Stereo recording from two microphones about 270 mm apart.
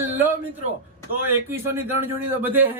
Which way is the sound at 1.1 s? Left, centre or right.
Centre.